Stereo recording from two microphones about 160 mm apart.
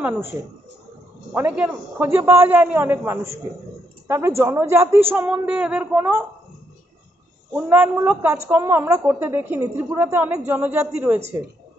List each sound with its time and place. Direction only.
0.0 s a man's voice: 15° right (ahead or behind)
4.4 s a man's voice: 15° right (ahead or behind)
7.5 s a man's voice: 15° right (ahead or behind)
9.6 s a man's voice: 20° right (ahead or behind)